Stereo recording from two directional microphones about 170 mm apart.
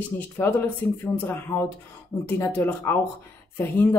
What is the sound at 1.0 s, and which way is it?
A woman's voice, 10° left (ahead or behind).